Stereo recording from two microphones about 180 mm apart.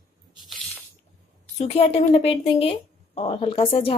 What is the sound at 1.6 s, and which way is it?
A woman's voice, 30° left (ahead or behind).